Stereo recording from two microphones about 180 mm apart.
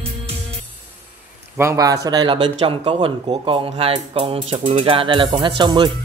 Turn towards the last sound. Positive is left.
turn(degrees=-25)  # may be behind; listen again after turning